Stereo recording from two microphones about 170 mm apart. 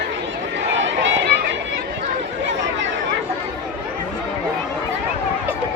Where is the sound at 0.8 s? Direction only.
90° right.